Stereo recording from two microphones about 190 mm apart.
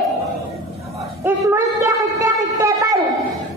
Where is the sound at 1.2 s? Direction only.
10° right (ahead or behind).